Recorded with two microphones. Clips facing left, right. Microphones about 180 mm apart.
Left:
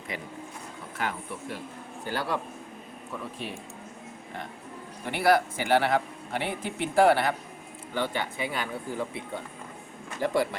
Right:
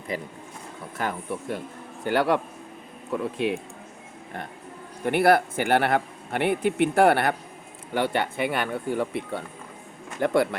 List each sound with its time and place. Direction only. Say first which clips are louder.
0.1 s speech: right 5 dB; 40° right (ahead or behind)
2.0 s a man's voice: right 8 dB; 65° right (ahead or behind)
5.0 s a man's voice: right 4 dB; 55° right (ahead or behind)
10.2 s a man's voice: right 4 dB; 60° right (ahead or behind)